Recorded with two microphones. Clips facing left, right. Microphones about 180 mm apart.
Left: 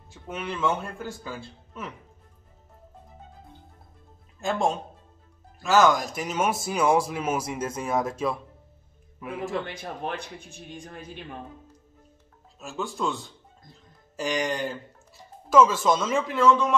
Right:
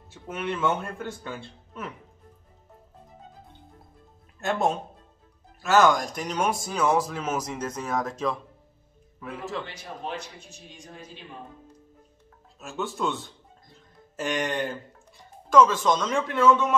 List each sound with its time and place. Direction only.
0.1 s speech: centre (ahead or behind)
4.4 s a man's voice: centre (ahead or behind)
9.7 s speech: 55° left (ahead or behind)
12.5 s speech: centre (ahead or behind)